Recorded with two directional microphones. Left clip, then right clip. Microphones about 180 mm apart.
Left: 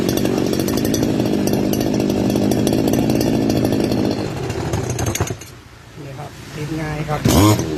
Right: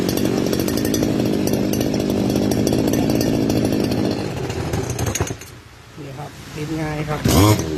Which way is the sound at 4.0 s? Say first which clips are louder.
Left 2 dB; 15° left (ahead or behind).